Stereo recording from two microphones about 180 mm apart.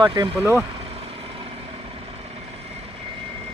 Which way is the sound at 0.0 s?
25° right (ahead or behind).